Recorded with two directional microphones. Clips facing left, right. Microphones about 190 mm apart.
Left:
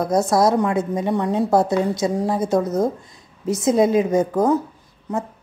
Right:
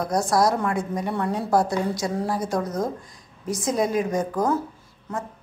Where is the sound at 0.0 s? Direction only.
20° left (ahead or behind).